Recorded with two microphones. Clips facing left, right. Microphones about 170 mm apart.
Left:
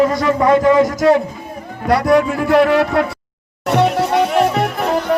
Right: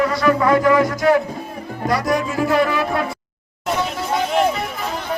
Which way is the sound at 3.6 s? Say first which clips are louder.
Left 7 dB; 70° left (ahead or behind).